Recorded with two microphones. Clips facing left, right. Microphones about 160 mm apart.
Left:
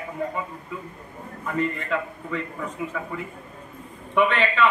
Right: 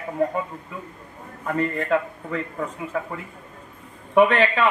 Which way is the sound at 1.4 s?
45° right (ahead or behind).